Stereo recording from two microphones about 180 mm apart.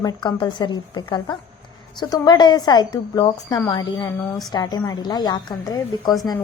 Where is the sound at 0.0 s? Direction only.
25° left (ahead or behind).